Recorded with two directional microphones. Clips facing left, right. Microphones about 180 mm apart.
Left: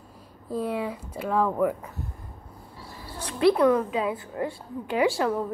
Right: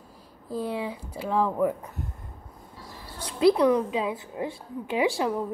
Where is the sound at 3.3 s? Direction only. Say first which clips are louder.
Even; 20° right (ahead or behind).